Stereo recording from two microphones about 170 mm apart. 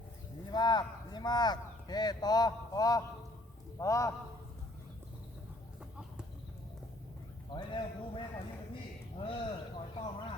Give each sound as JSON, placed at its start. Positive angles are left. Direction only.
{"t": 0.5, "sound": "speech", "side_deg": 25}
{"t": 7.5, "sound": "speech", "side_deg": 25}